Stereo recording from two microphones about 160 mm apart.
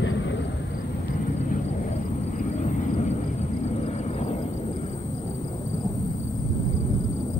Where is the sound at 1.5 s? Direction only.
55° left (ahead or behind).